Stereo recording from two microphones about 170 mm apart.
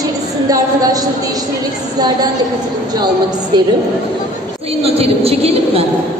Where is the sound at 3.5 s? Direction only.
25° right (ahead or behind).